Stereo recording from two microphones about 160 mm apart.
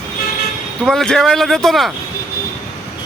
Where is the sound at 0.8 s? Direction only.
5° left (ahead or behind).